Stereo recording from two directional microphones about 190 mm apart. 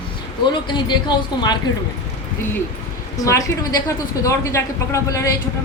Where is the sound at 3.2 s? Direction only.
15° left (ahead or behind).